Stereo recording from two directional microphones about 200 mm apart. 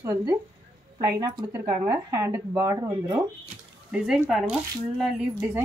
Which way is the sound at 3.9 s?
Centre (ahead or behind).